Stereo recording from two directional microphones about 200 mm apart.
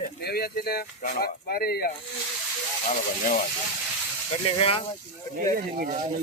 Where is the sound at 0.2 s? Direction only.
50° left (ahead or behind).